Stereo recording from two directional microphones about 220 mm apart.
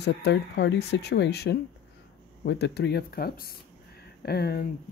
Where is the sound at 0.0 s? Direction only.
50° left (ahead or behind).